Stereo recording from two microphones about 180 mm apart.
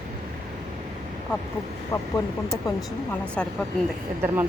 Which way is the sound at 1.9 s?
20° left (ahead or behind).